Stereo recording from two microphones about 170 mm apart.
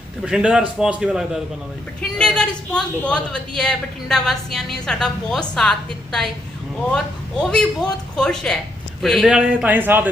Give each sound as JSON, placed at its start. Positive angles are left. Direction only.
{"t": 0.3, "sound": "a man's voice", "side_deg": -5}